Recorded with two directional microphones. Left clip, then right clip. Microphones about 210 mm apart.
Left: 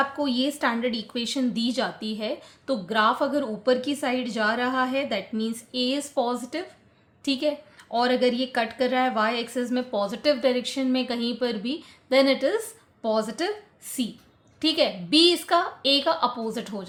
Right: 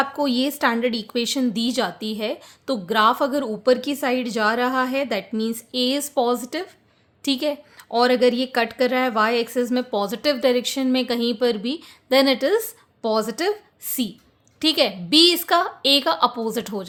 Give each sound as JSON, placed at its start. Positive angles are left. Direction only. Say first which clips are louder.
{"t": 0.0, "sound": "a woman's voice", "louder": "right 3 dB", "side_deg": -45}